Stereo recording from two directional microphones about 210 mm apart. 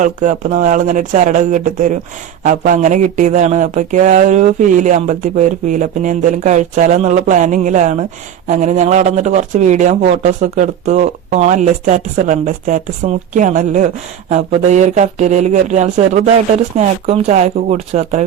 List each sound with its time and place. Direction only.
0.0 s speech: 35° right (ahead or behind)